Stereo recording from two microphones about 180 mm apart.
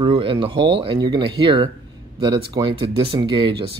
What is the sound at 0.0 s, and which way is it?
Speech, 30° right (ahead or behind).